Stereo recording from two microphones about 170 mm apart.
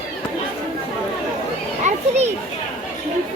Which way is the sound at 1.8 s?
40° right (ahead or behind).